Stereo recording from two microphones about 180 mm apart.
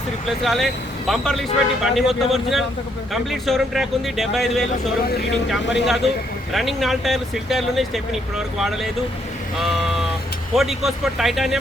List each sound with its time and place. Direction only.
0.3 s a man's voice: centre (ahead or behind)
5.0 s speech: 60° left (ahead or behind)
5.6 s speech: 75° left (ahead or behind)
6.5 s a man's voice: centre (ahead or behind)